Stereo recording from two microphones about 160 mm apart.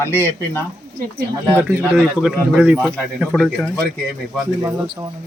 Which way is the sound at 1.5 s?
15° right (ahead or behind).